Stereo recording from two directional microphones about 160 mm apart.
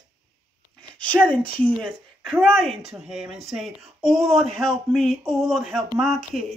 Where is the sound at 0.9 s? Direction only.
10° left (ahead or behind).